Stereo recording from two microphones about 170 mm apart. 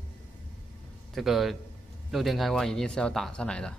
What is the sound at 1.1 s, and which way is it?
Speech, centre (ahead or behind).